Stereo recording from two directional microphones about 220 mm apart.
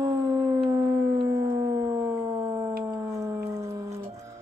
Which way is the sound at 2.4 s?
15° right (ahead or behind).